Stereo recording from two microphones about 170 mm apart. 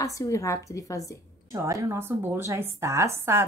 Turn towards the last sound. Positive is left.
turn(degrees=-15)  # may be behind; listen again after turning